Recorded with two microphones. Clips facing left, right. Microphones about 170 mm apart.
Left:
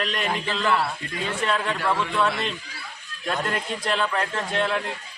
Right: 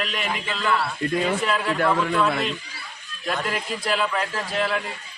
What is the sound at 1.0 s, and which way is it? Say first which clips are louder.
Speech: right 11 dB; 55° right (ahead or behind).